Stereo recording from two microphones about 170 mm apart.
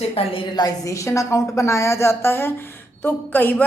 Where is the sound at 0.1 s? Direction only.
30° left (ahead or behind).